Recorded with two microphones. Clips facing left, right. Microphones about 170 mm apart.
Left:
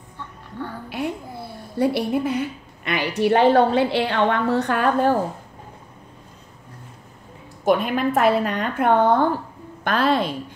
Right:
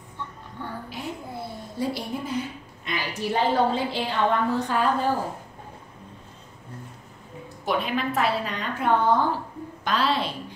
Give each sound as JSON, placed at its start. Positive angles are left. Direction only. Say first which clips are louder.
{"t": 1.8, "sound": "a woman's voice", "louder": "left 9 dB", "side_deg": 65}
{"t": 7.6, "sound": "a woman's voice", "louder": "left 7 dB", "side_deg": 50}